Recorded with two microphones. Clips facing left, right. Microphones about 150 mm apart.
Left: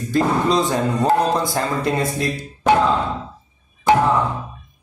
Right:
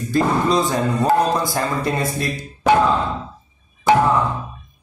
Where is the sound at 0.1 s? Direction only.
25° left (ahead or behind).